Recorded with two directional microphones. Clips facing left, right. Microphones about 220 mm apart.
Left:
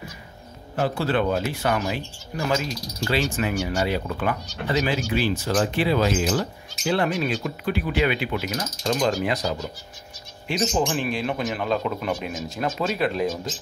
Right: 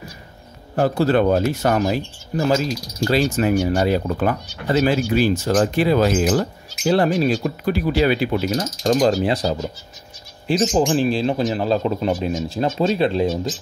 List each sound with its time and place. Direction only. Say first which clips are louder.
0.7 s speech: right 6 dB; 40° right (ahead or behind)